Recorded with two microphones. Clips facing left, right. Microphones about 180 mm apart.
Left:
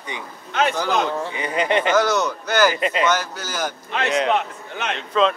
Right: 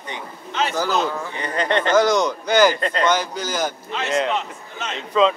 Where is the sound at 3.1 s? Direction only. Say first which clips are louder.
Right 1 dB; 15° right (ahead or behind).